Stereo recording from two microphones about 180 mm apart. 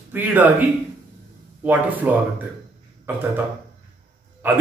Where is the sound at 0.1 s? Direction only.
10° right (ahead or behind).